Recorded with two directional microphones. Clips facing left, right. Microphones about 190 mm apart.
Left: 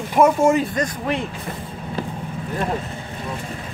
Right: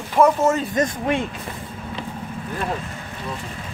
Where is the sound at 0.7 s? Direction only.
25° right (ahead or behind).